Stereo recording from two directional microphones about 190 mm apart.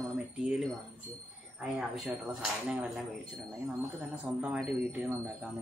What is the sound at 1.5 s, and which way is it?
Speech, centre (ahead or behind).